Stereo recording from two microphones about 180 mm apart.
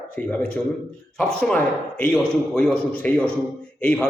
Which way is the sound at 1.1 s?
5° left (ahead or behind).